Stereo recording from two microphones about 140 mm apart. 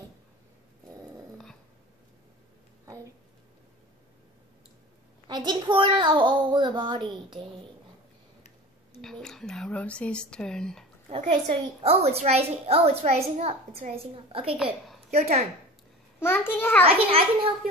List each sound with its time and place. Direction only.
5.3 s a child's voice: 30° right (ahead or behind)
9.0 s speech: 5° left (ahead or behind)
11.1 s a woman's voice: 55° right (ahead or behind)
16.2 s a child's voice: 15° left (ahead or behind)
16.8 s a woman's voice: 45° right (ahead or behind)